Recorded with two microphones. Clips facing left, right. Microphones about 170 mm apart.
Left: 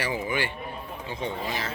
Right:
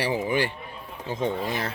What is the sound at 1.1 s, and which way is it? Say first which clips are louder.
Speech: right 5 dB; 50° right (ahead or behind).